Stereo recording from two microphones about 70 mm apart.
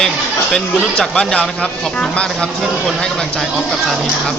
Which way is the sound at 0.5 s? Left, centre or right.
Centre.